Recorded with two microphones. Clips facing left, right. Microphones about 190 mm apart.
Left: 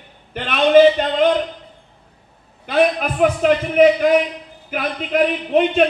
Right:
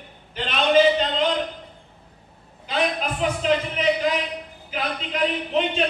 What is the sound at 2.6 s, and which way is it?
A man's voice, 60° left (ahead or behind).